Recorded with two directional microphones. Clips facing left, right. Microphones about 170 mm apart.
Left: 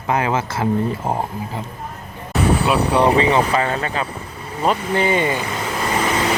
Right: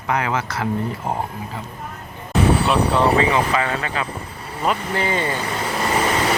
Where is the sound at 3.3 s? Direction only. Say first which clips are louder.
Left 2 dB; 35° left (ahead or behind).